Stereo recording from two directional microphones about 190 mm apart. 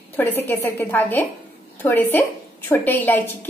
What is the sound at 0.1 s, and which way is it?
A woman's voice, 10° left (ahead or behind).